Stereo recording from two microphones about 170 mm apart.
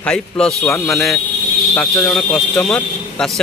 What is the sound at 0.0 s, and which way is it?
Speech, 5° left (ahead or behind).